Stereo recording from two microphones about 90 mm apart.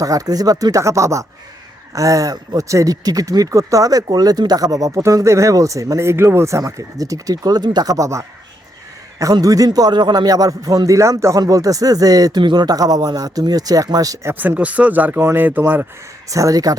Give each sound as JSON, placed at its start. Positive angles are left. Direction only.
{"t": 0.0, "sound": "a man's voice", "side_deg": -40}
{"t": 12.4, "sound": "a man's voice", "side_deg": -55}
{"t": 14.3, "sound": "speech", "side_deg": -20}
{"t": 16.3, "sound": "speech", "side_deg": -40}